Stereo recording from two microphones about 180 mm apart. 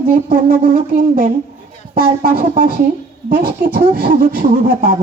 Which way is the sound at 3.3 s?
55° right (ahead or behind).